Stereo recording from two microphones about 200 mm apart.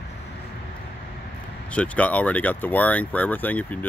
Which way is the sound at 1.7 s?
5° left (ahead or behind).